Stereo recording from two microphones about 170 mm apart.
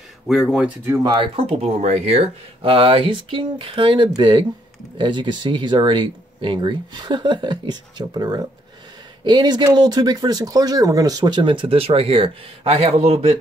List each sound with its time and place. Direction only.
0.3 s speech: centre (ahead or behind)
1.0 s speech: 30° right (ahead or behind)